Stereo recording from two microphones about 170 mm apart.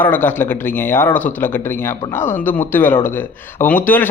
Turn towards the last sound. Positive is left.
turn(degrees=10)  # may be behind; listen again after turning